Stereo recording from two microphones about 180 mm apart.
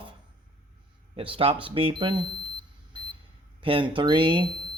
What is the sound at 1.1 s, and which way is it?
Speech, 30° right (ahead or behind).